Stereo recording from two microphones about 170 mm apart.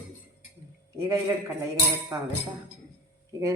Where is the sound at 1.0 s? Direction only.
15° right (ahead or behind).